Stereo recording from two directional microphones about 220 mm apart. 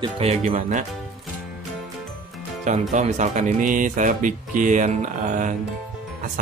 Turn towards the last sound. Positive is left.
turn(degrees=-35)  # may be behind; listen again after turning